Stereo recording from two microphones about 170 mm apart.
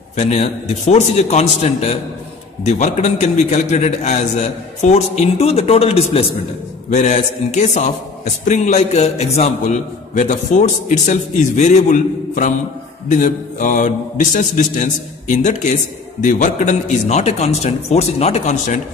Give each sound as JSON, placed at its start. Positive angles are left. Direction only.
{"t": 0.1, "sound": "a man's voice", "side_deg": 40}